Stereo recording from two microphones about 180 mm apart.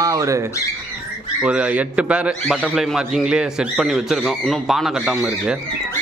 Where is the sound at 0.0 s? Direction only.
15° right (ahead or behind).